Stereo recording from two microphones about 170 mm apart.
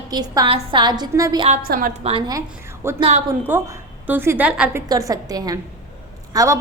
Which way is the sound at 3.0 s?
40° right (ahead or behind).